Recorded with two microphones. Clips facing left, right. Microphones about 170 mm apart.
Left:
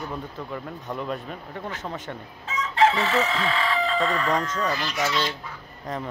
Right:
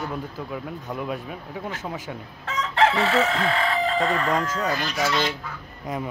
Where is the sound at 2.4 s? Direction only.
65° right (ahead or behind); by 4.5 s 50° right (ahead or behind).